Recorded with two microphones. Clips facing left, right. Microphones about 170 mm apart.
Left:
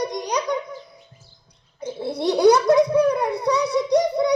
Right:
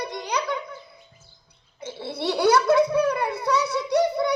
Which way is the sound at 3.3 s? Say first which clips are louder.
Left 3 dB; 15° left (ahead or behind).